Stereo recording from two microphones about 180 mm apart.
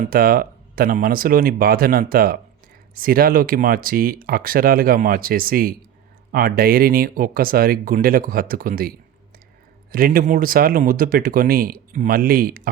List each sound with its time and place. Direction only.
0.1 s speech: 55° right (ahead or behind)
9.9 s speech: 55° right (ahead or behind)